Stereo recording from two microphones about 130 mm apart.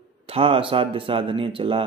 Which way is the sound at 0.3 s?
45° right (ahead or behind).